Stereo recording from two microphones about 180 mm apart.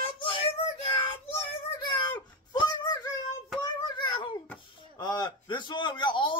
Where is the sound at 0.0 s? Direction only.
30° left (ahead or behind).